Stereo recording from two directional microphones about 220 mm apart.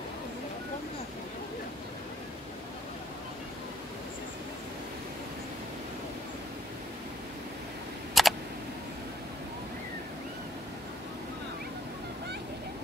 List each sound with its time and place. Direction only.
8.1 s camera: centre (ahead or behind)